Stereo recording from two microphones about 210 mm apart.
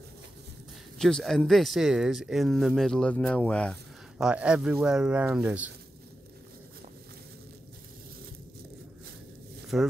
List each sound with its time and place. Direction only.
0.9 s speech: centre (ahead or behind)
4.2 s speech: 5° right (ahead or behind)
9.7 s speech: centre (ahead or behind)